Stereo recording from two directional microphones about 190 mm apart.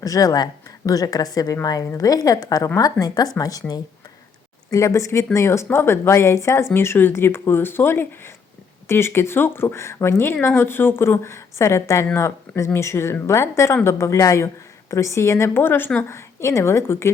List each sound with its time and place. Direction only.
0.0 s a woman's voice: 20° left (ahead or behind)